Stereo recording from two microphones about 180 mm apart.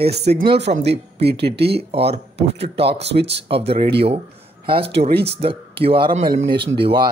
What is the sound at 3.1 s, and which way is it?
Speech, 70° right (ahead or behind).